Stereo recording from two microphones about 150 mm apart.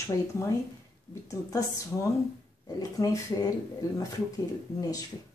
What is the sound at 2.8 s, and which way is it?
Speech, 25° left (ahead or behind).